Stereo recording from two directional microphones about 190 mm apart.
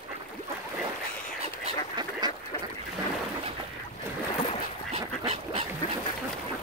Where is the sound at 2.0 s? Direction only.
20° right (ahead or behind).